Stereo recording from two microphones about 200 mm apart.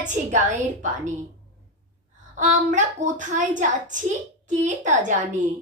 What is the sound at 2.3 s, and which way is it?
A woman's voice, 40° right (ahead or behind).